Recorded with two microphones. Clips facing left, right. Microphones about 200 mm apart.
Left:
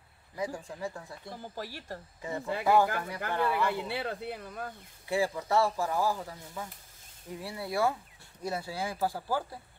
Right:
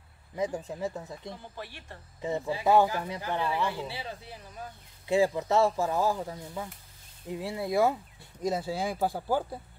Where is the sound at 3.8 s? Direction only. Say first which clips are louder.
Left 4 dB; 55° left (ahead or behind).